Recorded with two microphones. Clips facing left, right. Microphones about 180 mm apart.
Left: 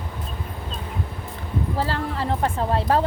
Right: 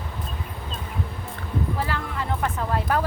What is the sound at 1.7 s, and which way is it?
Speech, 30° left (ahead or behind).